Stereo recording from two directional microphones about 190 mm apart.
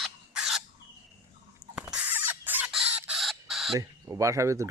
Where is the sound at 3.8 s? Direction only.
15° right (ahead or behind).